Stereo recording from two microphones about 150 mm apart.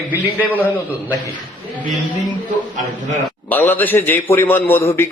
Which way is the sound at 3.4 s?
10° left (ahead or behind).